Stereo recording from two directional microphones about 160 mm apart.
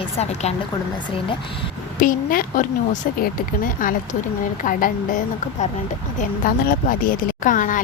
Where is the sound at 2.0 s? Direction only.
60° left (ahead or behind).